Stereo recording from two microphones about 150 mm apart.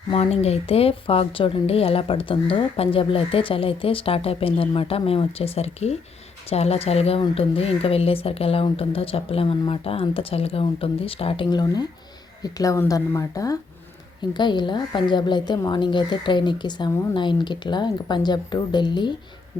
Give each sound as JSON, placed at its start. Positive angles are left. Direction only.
{"t": 0.1, "sound": "a woman's voice", "side_deg": 45}